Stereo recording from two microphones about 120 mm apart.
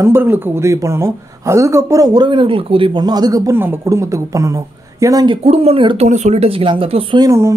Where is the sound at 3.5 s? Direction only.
20° right (ahead or behind).